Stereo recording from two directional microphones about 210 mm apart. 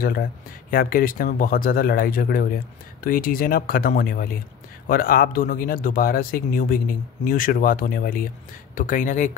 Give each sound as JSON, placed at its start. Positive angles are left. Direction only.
{"t": 0.0, "sound": "speech", "side_deg": 45}